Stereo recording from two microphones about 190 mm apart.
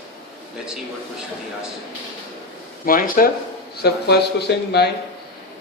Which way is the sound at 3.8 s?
60° left (ahead or behind).